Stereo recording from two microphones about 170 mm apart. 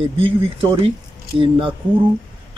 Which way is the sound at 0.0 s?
30° right (ahead or behind).